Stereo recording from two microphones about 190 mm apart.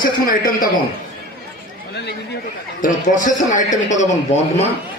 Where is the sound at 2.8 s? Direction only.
45° left (ahead or behind).